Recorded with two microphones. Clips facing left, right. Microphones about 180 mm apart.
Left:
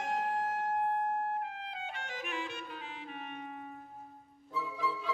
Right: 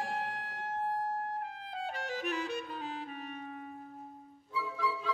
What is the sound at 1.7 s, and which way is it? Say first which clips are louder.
Clarinet: right 4 dB; 40° right (ahead or behind).